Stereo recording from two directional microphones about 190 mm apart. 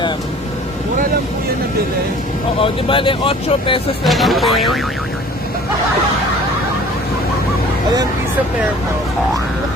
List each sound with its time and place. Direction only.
2.6 s speech: 25° left (ahead or behind)
4.0 s music: centre (ahead or behind)